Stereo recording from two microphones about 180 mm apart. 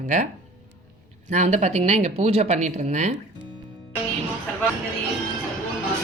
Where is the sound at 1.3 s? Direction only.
40° right (ahead or behind).